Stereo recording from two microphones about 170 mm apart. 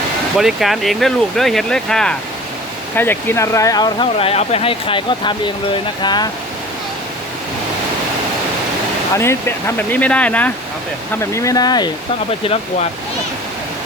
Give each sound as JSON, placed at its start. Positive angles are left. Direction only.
{"t": 0.3, "sound": "speech", "side_deg": 0}
{"t": 9.1, "sound": "speech", "side_deg": 15}